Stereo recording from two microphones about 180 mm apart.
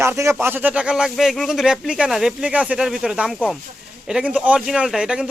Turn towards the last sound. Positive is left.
turn(degrees=-5)  # may be behind; listen again after turning